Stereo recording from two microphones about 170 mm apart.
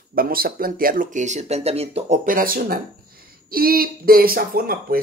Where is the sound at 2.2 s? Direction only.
55° right (ahead or behind).